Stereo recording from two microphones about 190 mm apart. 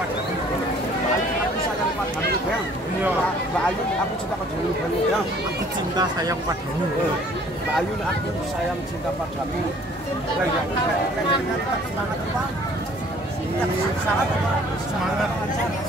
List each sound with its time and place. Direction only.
5.9 s speech: 20° right (ahead or behind)